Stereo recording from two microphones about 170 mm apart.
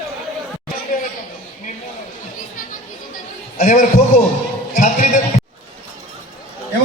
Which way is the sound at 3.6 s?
45° left (ahead or behind).